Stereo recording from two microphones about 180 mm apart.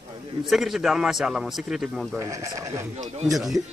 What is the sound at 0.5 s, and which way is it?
Speech, centre (ahead or behind).